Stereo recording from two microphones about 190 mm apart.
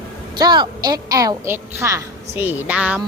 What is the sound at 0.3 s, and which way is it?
A woman's voice, 20° right (ahead or behind).